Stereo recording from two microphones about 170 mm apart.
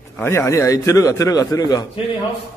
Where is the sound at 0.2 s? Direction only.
15° left (ahead or behind).